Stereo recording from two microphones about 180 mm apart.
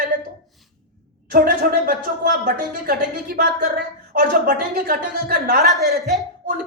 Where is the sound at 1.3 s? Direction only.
55° right (ahead or behind).